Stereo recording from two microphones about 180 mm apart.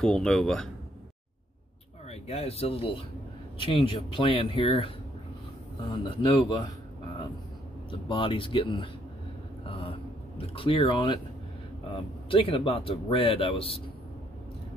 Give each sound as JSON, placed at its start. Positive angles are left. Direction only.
{"t": 0.0, "sound": "speech", "side_deg": 5}
{"t": 2.0, "sound": "speech", "side_deg": 35}
{"t": 7.9, "sound": "speech", "side_deg": 30}
{"t": 12.3, "sound": "speech", "side_deg": 30}